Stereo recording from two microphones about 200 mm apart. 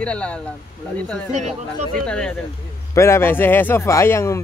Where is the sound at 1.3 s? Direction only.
35° right (ahead or behind).